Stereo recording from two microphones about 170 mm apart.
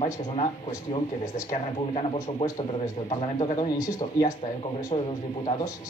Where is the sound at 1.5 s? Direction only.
35° left (ahead or behind).